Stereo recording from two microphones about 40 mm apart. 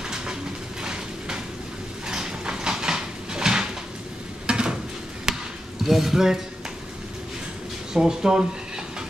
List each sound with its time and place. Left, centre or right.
2.0 s a sound: centre
4.5 s stir: right
5.3 s basketball bounce: centre
5.9 s speech: centre
7.9 s speech: centre